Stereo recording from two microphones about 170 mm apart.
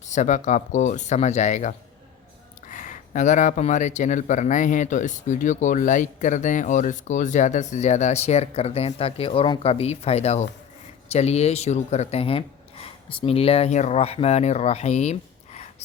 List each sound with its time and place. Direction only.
0.0 s speech: 45° left (ahead or behind)